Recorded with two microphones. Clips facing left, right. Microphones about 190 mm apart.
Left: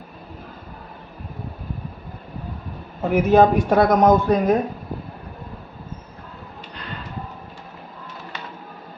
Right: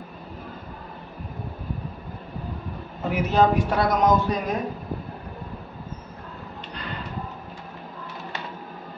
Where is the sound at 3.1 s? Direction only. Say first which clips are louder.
Left 6 dB; 50° left (ahead or behind).